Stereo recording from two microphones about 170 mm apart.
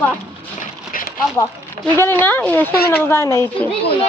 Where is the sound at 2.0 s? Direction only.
10° left (ahead or behind).